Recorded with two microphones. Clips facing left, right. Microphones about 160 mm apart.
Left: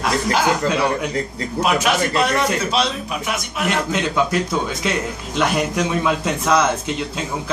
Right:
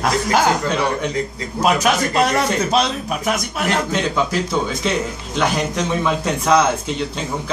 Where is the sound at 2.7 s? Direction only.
45° right (ahead or behind).